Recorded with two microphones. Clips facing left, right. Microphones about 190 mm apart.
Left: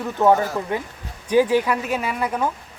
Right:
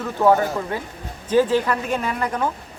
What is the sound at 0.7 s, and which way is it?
Speech, 15° left (ahead or behind).